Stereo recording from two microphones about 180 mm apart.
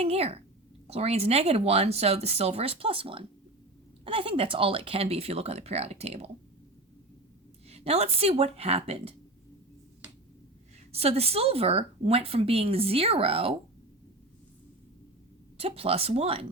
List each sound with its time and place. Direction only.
0.0 s speech: 35° right (ahead or behind)
7.7 s speech: 35° right (ahead or behind)
10.9 s speech: 35° right (ahead or behind)
15.5 s speech: 30° right (ahead or behind)